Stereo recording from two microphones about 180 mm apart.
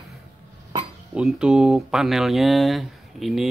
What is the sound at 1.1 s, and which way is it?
Speech, 5° right (ahead or behind).